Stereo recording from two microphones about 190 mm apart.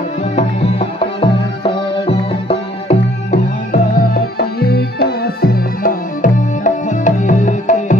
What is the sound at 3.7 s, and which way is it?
Music, 50° left (ahead or behind).